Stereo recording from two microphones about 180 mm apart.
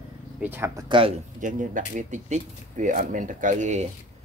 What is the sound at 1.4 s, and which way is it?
Speech, 45° right (ahead or behind).